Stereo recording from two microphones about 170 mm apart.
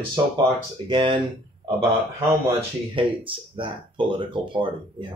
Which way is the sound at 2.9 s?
30° right (ahead or behind).